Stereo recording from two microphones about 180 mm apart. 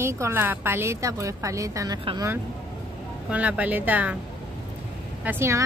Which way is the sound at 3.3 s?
10° right (ahead or behind).